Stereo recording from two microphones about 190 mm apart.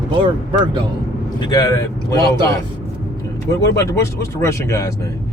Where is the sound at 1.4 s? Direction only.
20° left (ahead or behind).